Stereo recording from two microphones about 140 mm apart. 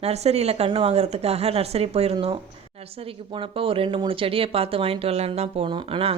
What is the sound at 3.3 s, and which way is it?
Speech, 40° right (ahead or behind).